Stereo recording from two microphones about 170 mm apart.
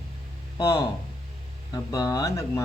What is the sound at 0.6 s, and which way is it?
Speech, 20° left (ahead or behind).